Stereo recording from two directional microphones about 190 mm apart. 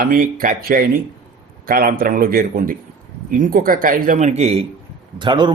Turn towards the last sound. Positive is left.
turn(degrees=-25)  # may be behind; listen again after turning